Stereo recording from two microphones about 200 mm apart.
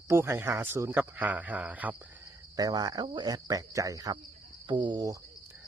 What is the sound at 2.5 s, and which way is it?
Speech, 20° right (ahead or behind).